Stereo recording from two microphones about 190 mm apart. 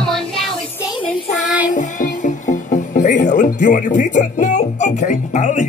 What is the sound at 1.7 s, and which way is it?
A woman's voice, 40° left (ahead or behind).